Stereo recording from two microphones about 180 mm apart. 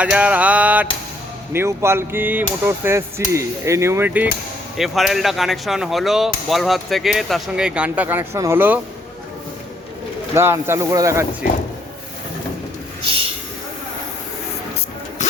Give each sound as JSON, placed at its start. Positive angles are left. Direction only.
{"t": 0.0, "sound": "speech", "side_deg": -5}
{"t": 10.3, "sound": "speech", "side_deg": -15}